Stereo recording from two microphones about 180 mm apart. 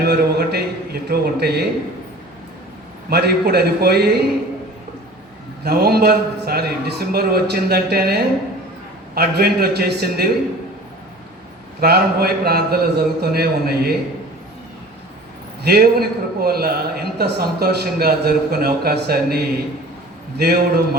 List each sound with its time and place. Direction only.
0.0 s a man's voice: 60° right (ahead or behind)
3.1 s a man's voice: 65° right (ahead or behind)
5.6 s a man's voice: 60° right (ahead or behind)
11.8 s a man's voice: 60° right (ahead or behind)
15.6 s a man's voice: 60° right (ahead or behind)